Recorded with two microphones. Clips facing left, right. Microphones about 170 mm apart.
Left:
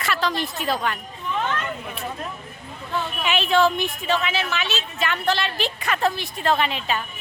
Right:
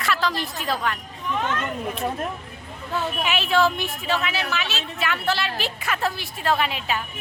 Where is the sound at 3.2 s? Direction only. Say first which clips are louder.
Left 2 dB; 5° right (ahead or behind).